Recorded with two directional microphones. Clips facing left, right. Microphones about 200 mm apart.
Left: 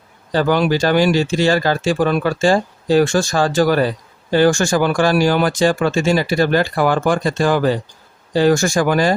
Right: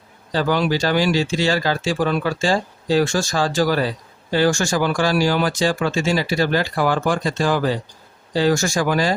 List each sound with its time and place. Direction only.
0.3 s speech: 55° left (ahead or behind)